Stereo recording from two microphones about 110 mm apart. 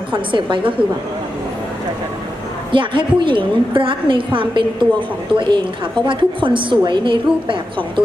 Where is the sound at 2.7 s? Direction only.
50° right (ahead or behind).